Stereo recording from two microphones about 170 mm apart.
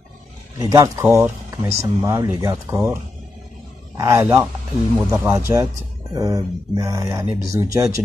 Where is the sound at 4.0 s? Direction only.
15° right (ahead or behind).